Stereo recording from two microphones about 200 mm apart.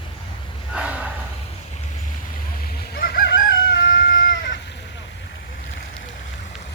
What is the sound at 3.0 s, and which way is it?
Chicken, 50° left (ahead or behind).